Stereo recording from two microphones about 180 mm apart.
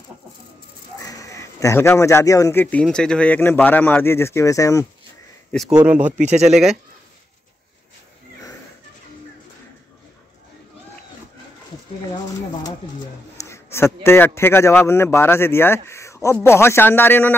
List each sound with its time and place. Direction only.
0.9 s a man's voice: 20° left (ahead or behind)
5.5 s speech: centre (ahead or behind)
6.0 s speech: 40° right (ahead or behind)
6.4 s speech: centre (ahead or behind)
13.4 s a man's voice: 15° left (ahead or behind)